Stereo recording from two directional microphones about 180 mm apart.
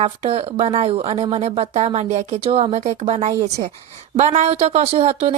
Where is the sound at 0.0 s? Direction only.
30° right (ahead or behind).